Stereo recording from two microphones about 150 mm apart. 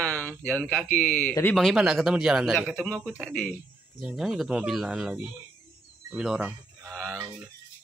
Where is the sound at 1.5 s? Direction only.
Centre (ahead or behind).